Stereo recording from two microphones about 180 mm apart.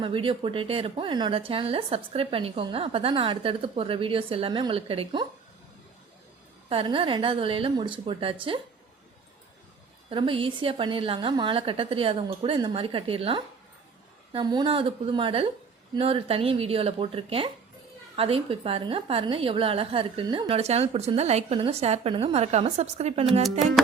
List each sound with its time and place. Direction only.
0.0 s speech: 30° right (ahead or behind)
6.7 s a woman's voice: 30° right (ahead or behind)
10.1 s a woman's voice: 30° right (ahead or behind)